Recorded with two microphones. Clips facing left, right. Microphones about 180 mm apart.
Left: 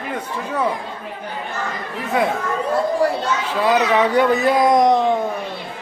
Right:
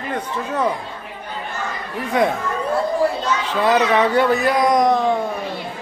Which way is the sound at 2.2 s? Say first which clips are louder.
Right 2 dB; 5° left (ahead or behind).